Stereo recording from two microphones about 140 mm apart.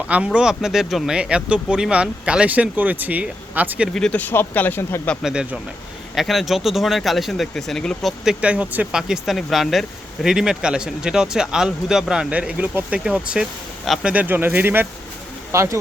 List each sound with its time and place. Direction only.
0.3 s speech: 5° right (ahead or behind)
3.9 s speech: 5° left (ahead or behind)
5.2 s speech: 5° right (ahead or behind)
14.1 s speech: 10° right (ahead or behind)